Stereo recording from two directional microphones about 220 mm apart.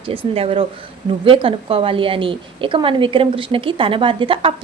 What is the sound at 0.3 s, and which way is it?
A woman's voice, 25° right (ahead or behind).